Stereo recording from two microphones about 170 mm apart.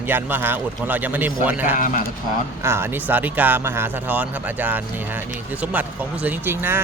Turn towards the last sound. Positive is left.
turn(degrees=-15)  # may be behind; listen again after turning